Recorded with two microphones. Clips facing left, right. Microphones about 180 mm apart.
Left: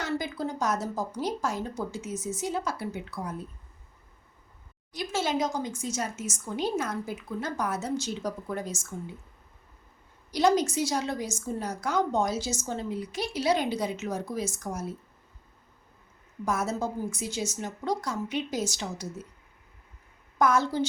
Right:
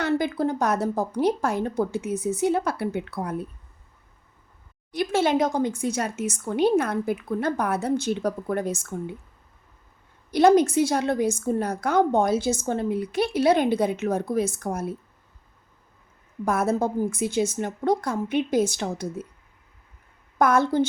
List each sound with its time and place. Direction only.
0.0 s a woman's voice: 60° right (ahead or behind)
4.9 s a woman's voice: 60° right (ahead or behind)
10.3 s a woman's voice: 55° right (ahead or behind)
16.5 s a woman's voice: 55° right (ahead or behind)
20.4 s a woman's voice: 55° right (ahead or behind)